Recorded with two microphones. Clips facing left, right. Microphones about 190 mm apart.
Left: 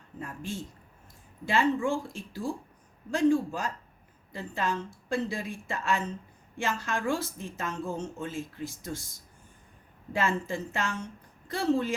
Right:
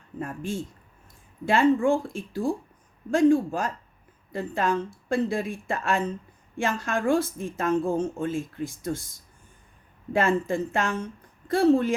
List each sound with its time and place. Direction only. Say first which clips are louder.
0.2 s a woman's voice: right 6 dB; 50° right (ahead or behind)
10.1 s a woman's voice: right 6 dB; 55° right (ahead or behind)